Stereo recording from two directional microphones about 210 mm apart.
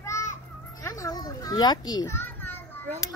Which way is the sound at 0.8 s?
15° left (ahead or behind).